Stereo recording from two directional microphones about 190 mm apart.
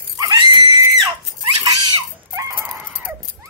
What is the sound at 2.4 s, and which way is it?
Dog, 15° right (ahead or behind).